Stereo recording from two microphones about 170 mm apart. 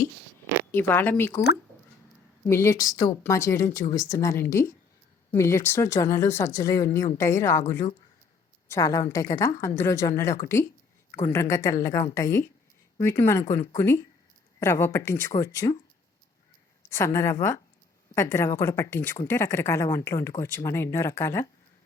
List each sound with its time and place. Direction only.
0.7 s a woman's voice: 10° left (ahead or behind)
2.5 s a woman's voice: 15° left (ahead or behind)
8.6 s a woman's voice: 20° left (ahead or behind)
16.9 s a woman's voice: 15° left (ahead or behind)